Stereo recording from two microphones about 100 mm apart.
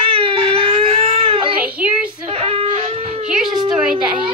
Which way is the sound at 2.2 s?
80° right.